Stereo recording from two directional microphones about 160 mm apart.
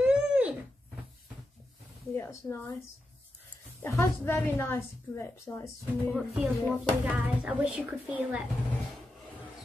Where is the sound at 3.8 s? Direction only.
15° left (ahead or behind).